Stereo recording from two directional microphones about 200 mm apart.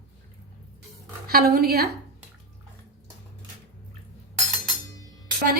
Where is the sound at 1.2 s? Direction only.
50° right (ahead or behind).